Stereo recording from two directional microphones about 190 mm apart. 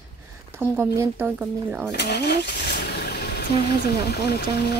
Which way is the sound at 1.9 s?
60° left (ahead or behind).